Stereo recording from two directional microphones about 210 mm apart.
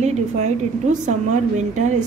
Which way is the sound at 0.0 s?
35° right (ahead or behind).